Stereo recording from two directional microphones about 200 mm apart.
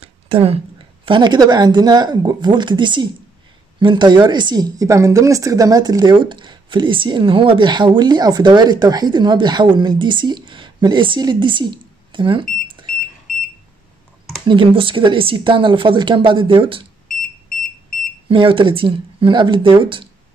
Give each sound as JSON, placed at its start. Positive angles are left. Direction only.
{"t": 0.0, "sound": "a sound", "side_deg": -30}
{"t": 1.0, "sound": "a woman's voice", "side_deg": -25}
{"t": 14.4, "sound": "a woman's voice", "side_deg": -25}
{"t": 18.3, "sound": "a woman's voice", "side_deg": -25}